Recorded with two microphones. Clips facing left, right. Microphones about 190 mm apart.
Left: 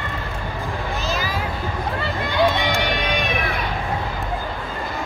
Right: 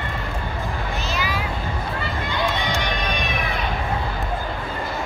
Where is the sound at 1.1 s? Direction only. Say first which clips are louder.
Left 1 dB; 40° left (ahead or behind).